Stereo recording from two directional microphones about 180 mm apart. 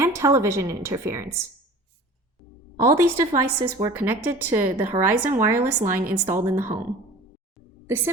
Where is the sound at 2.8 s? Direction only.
15° right (ahead or behind).